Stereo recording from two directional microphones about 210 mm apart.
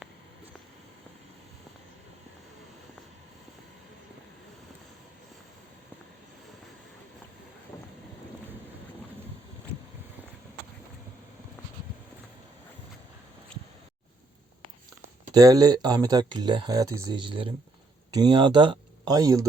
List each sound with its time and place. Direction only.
15.3 s speech: 20° right (ahead or behind)